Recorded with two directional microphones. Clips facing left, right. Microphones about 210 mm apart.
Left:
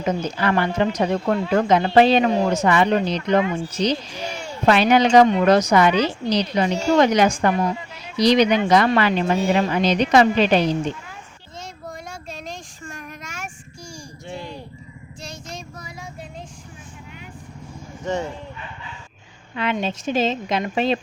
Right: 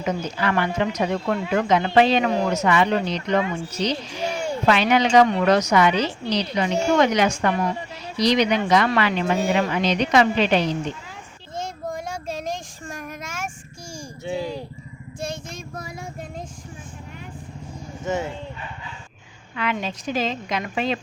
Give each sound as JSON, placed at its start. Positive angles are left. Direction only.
{"t": 0.0, "sound": "speech", "side_deg": 35}
{"t": 11.5, "sound": "child singing", "side_deg": -50}
{"t": 15.2, "sound": "child singing", "side_deg": -50}
{"t": 18.0, "sound": "speech", "side_deg": -5}
{"t": 19.5, "sound": "a woman's voice", "side_deg": 25}